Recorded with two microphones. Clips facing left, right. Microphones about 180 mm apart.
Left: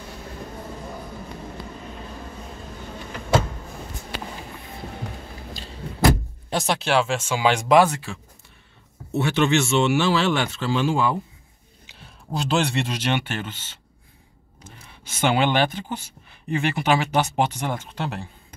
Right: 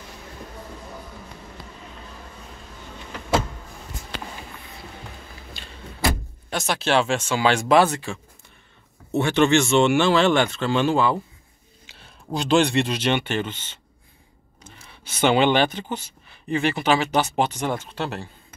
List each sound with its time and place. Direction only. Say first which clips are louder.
6.5 s speech: left 2 dB; 35° left (ahead or behind)
6.8 s speech: right 5 dB; 10° left (ahead or behind)
12.4 s speech: right 4 dB; 5° left (ahead or behind)